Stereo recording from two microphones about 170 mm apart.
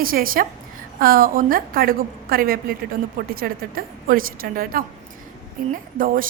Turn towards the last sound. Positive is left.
turn(degrees=-55)  # may be behind; listen again after turning